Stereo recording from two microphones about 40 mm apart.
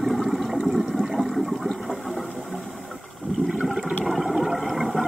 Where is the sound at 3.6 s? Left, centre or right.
Centre.